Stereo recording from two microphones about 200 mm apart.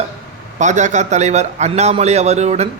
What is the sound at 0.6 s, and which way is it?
A man's voice, 35° right (ahead or behind).